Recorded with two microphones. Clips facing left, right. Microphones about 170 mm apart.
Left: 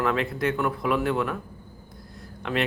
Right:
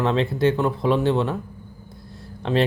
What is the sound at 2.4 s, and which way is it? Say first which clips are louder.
Speech: right 6 dB; 30° right (ahead or behind).